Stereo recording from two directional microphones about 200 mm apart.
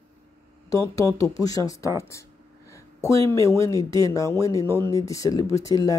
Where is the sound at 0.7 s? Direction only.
15° left (ahead or behind).